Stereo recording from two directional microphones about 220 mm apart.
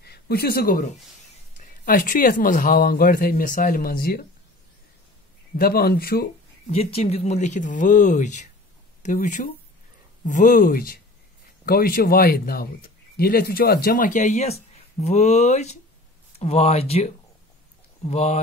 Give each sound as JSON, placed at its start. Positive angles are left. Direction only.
{"t": 0.0, "sound": "speech", "side_deg": 45}
{"t": 5.6, "sound": "a man's voice", "side_deg": 45}
{"t": 6.7, "sound": "speech", "side_deg": 25}